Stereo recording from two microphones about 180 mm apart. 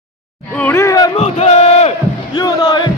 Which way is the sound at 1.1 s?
35° left (ahead or behind).